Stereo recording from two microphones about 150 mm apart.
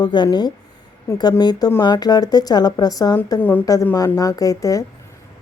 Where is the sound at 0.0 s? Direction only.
30° left (ahead or behind).